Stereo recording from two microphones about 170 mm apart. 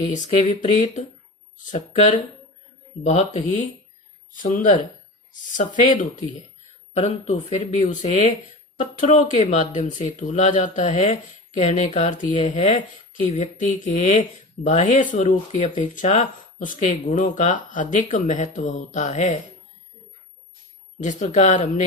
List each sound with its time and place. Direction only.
0.0 s speech: 45° left (ahead or behind)
4.4 s speech: 50° left (ahead or behind)
21.0 s speech: 45° left (ahead or behind)